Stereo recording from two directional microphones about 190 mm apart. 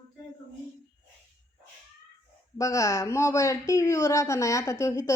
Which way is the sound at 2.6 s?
15° left (ahead or behind).